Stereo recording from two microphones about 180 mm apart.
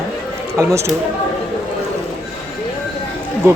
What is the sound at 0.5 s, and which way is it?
Speech, 15° right (ahead or behind).